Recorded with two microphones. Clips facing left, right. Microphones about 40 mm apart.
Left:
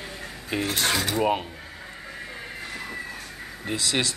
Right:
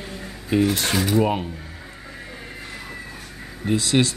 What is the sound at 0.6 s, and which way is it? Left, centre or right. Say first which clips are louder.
Cutlery: right 2 dB; left.